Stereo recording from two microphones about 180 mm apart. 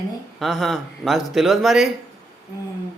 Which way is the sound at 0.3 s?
Centre (ahead or behind).